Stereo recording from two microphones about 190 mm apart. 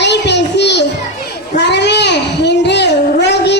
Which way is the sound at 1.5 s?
65° left (ahead or behind).